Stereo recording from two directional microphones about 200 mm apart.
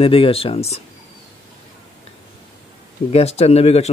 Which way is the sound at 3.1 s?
30° left (ahead or behind).